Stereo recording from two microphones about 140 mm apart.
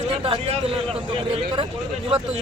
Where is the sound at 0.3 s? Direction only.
40° right (ahead or behind).